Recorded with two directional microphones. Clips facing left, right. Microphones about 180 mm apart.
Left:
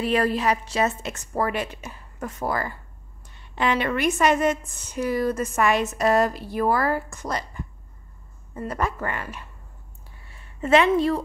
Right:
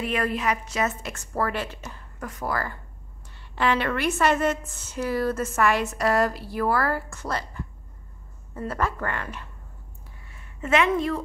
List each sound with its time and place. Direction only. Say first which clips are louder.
0.0 s a woman's voice: left 4 dB; 35° left (ahead or behind); by 2.0 s 15° left (ahead or behind)
2.1 s a woman's voice: left 2 dB; 25° left (ahead or behind)
8.6 s a woman's voice: left 1 dB; 15° left (ahead or behind)
10.3 s a woman's voice: left 4 dB; 30° left (ahead or behind)